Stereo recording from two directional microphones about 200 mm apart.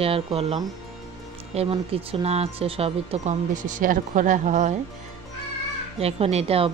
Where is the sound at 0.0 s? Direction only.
30° right (ahead or behind).